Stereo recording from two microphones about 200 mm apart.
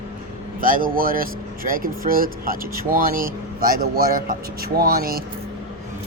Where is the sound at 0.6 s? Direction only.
45° right (ahead or behind).